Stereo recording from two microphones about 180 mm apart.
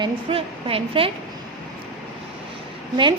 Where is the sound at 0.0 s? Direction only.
30° right (ahead or behind).